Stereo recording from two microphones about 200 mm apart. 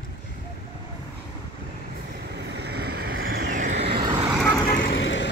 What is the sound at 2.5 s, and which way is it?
Vehicle, 55° right (ahead or behind).